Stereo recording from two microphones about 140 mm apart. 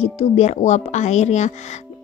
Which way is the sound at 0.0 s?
50° left (ahead or behind).